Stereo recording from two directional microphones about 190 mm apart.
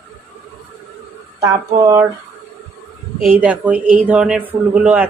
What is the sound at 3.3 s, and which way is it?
A woman's voice, 5° right (ahead or behind).